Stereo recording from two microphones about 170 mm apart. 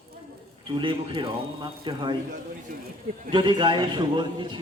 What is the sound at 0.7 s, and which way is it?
A man's voice, 30° right (ahead or behind).